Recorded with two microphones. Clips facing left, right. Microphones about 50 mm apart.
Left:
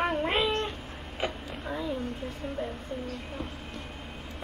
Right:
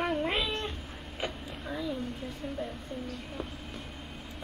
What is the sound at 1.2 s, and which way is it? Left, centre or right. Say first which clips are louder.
Vehicle: left 4 dB; centre.